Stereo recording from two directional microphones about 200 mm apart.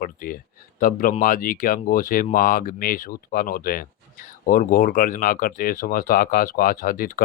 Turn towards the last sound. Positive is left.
turn(degrees=45)  # may be behind; listen again after turning